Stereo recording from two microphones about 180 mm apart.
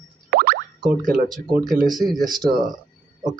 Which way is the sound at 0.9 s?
50° right (ahead or behind).